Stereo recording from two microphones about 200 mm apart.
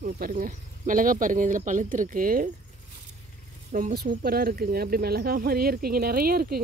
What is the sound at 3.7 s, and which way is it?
Speech, 45° right (ahead or behind).